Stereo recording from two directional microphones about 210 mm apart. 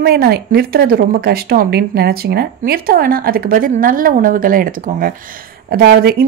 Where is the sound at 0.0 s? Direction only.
50° right (ahead or behind).